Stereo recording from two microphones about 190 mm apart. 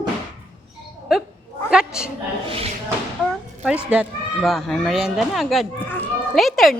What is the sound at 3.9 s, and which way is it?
Speech, 5° right (ahead or behind).